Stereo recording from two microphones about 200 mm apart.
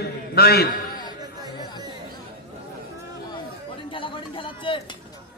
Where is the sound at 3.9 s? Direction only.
25° left (ahead or behind).